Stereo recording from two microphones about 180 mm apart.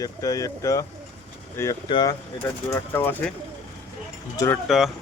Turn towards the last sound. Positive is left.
turn(degrees=0)  # may be behind; listen again after turning